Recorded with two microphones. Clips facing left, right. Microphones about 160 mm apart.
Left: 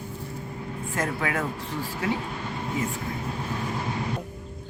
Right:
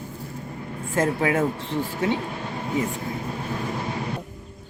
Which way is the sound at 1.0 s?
25° right (ahead or behind).